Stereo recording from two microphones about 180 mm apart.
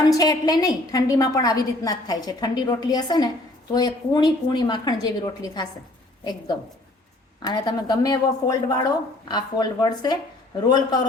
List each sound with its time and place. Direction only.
0.0 s a woman's voice: 20° left (ahead or behind)
7.4 s a woman's voice: 20° left (ahead or behind)